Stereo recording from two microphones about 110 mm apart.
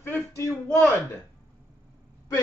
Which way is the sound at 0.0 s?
25° left (ahead or behind).